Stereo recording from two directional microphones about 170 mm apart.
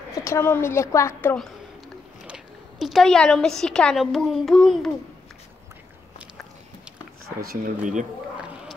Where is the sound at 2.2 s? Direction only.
5° right (ahead or behind).